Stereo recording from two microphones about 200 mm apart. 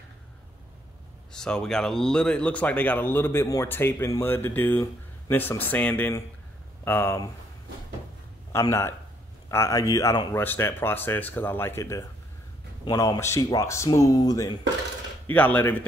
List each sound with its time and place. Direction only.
1.3 s speech: 5° left (ahead or behind)
8.5 s speech: 15° left (ahead or behind)